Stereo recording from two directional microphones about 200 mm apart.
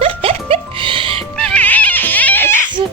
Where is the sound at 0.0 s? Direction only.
30° right (ahead or behind).